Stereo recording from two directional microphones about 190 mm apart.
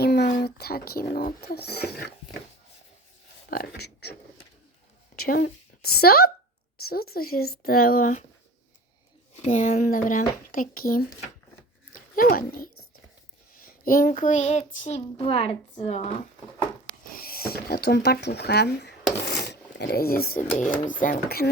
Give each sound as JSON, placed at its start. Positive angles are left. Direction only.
{"t": 0.0, "sound": "a sound", "side_deg": 60}
{"t": 0.3, "sound": "speech", "side_deg": 50}
{"t": 3.5, "sound": "speech", "side_deg": 55}
{"t": 5.1, "sound": "a woman's voice", "side_deg": 55}
{"t": 9.3, "sound": "a child's voice", "side_deg": 40}
{"t": 17.2, "sound": "speech", "side_deg": 50}
{"t": 19.1, "sound": "rub", "side_deg": 60}
{"t": 20.6, "sound": "speech", "side_deg": 45}